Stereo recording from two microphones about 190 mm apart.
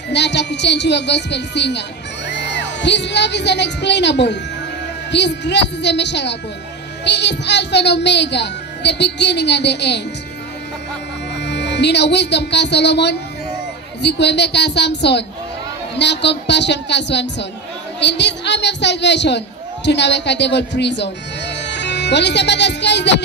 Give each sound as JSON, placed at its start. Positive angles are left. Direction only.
{"t": 0.1, "sound": "a woman's voice", "side_deg": 65}
{"t": 11.4, "sound": "a woman's voice", "side_deg": 65}